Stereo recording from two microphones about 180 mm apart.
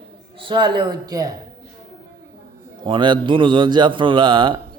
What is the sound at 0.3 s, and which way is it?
Speech, 25° right (ahead or behind).